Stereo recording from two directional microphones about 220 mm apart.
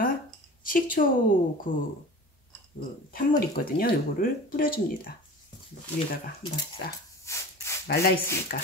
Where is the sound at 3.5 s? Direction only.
40° left (ahead or behind).